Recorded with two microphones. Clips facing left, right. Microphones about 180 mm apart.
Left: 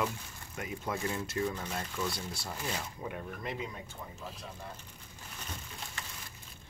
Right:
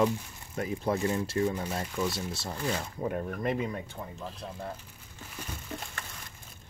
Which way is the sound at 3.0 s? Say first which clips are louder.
Right 8 dB; 45° right (ahead or behind).